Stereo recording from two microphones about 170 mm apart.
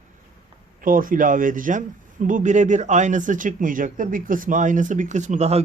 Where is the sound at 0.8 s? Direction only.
55° right (ahead or behind).